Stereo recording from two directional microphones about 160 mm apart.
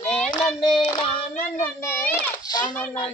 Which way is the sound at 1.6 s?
10° left (ahead or behind).